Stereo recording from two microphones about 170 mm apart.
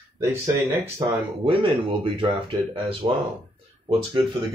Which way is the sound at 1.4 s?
30° right (ahead or behind).